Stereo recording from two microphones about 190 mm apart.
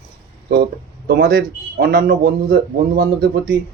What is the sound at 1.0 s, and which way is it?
A man's voice, 50° right (ahead or behind).